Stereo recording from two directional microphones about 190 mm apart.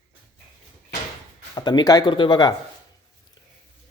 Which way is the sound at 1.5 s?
20° left (ahead or behind).